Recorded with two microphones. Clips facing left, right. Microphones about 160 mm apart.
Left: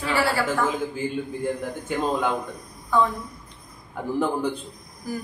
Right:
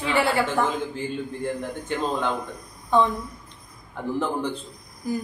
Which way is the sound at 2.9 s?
25° right (ahead or behind).